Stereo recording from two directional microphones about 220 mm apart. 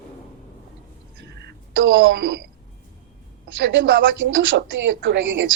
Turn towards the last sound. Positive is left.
turn(degrees=-55)  # may be behind; listen again after turning